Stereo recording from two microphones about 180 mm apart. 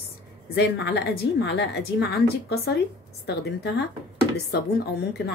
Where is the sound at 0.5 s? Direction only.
65° left (ahead or behind).